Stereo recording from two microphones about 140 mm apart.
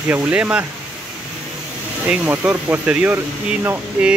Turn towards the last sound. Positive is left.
turn(degrees=-10)  # may be behind; listen again after turning